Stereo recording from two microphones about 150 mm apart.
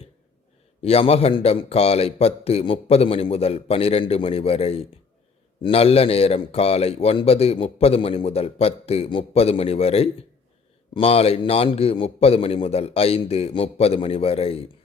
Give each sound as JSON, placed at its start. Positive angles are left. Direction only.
{"t": 0.8, "sound": "a man's voice", "side_deg": 40}